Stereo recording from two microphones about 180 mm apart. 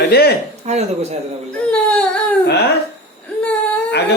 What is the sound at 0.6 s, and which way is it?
Speech, 40° right (ahead or behind).